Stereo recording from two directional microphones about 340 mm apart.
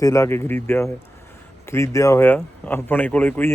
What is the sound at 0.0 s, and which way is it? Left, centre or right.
Speech, centre.